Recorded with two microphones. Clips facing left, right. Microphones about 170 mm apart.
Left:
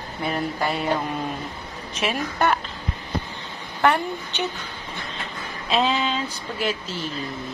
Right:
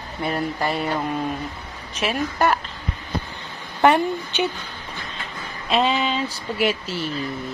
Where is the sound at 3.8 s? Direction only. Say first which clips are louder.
Right 4 dB; 20° right (ahead or behind).